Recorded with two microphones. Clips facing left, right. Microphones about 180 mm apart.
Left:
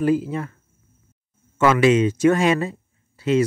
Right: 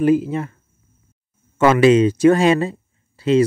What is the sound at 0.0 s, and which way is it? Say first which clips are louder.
Speech: right 4 dB; 20° right (ahead or behind).